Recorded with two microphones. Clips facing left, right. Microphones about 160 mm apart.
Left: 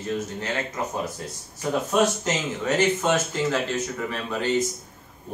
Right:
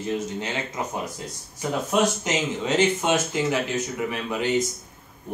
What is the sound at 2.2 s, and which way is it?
Speech, 20° right (ahead or behind).